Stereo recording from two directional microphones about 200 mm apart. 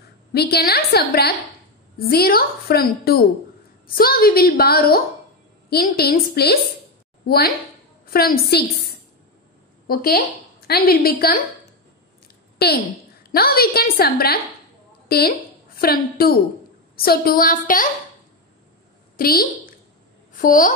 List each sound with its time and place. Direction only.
0.3 s a woman's voice: 55° left (ahead or behind)
9.8 s a woman's voice: 50° left (ahead or behind)
12.5 s a woman's voice: 50° left (ahead or behind)
19.1 s a woman's voice: 50° left (ahead or behind)